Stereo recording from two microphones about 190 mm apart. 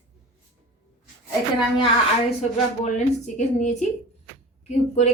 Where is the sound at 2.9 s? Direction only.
40° left (ahead or behind).